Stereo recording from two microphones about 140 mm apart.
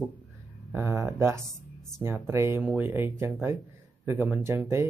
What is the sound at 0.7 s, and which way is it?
Speech, 20° right (ahead or behind).